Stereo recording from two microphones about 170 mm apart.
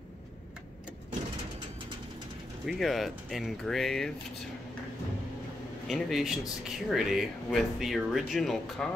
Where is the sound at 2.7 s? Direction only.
Centre (ahead or behind).